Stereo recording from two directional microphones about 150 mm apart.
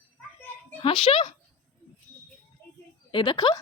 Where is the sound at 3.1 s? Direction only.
35° left (ahead or behind).